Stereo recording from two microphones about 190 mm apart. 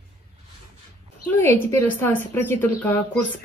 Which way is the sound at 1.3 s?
15° left (ahead or behind).